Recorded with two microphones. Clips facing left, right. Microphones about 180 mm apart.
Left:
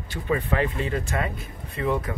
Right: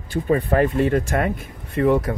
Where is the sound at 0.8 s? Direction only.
55° right (ahead or behind).